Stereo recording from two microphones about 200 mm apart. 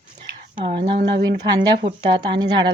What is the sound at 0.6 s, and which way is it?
Speech, 25° right (ahead or behind).